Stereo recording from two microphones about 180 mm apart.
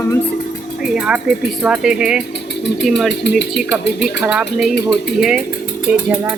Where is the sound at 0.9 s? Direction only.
5° right (ahead or behind).